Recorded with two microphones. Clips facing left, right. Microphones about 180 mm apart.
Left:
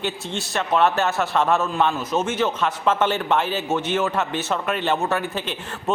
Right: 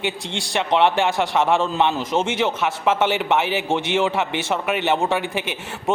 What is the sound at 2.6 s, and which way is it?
A man's voice, 10° right (ahead or behind).